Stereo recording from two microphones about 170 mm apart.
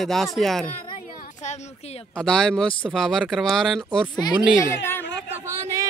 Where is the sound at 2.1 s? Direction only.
5° left (ahead or behind).